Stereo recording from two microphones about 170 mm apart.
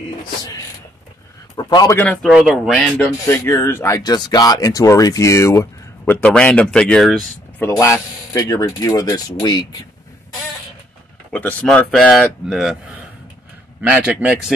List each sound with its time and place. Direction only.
1.6 s speech: 25° left (ahead or behind)
2.2 s speech: centre (ahead or behind)
7.6 s speech: 15° left (ahead or behind)
11.3 s a man's voice: 5° left (ahead or behind); by 14.5 s 10° right (ahead or behind)